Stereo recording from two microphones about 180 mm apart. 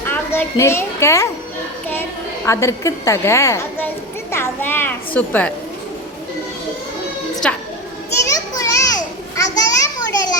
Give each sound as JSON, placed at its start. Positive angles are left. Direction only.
{"t": 0.0, "sound": "a child's voice", "side_deg": 10}
{"t": 2.5, "sound": "a woman's voice", "side_deg": 15}
{"t": 7.4, "sound": "a child's voice", "side_deg": 5}
{"t": 8.3, "sound": "children playing", "side_deg": 20}